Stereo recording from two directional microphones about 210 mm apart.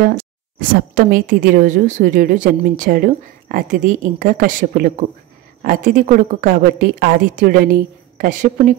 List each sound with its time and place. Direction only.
0.0 s a woman's voice: 40° right (ahead or behind)